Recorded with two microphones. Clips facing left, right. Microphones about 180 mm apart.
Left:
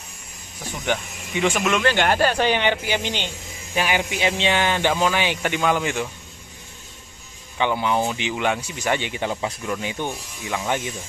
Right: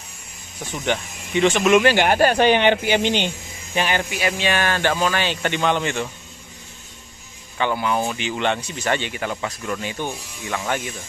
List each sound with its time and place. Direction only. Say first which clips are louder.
0.8 s speech: right 1 dB; 5° left (ahead or behind)
1.6 s speech: right 6 dB; 10° right (ahead or behind)
2.0 s speech: right 3 dB; 50° right (ahead or behind)
3.0 s speech: right 7 dB; 20° right (ahead or behind)
3.7 s speech: right 1 dB; 10° left (ahead or behind)
4.1 s speech: left 1 dB; 25° left (ahead or behind); by 6.0 s 5° left (ahead or behind)
7.5 s speech: even; 15° left (ahead or behind)